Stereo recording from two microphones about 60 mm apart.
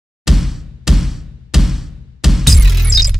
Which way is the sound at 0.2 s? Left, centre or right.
Centre.